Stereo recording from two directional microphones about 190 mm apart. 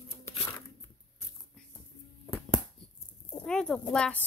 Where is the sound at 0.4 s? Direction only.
10° left (ahead or behind).